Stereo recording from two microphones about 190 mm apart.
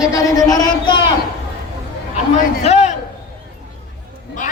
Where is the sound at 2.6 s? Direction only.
35° left (ahead or behind).